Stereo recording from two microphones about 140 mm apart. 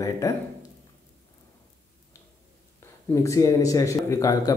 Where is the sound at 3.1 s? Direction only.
20° left (ahead or behind).